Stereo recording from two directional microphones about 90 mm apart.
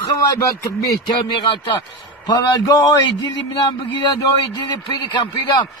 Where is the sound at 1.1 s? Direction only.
65° left (ahead or behind).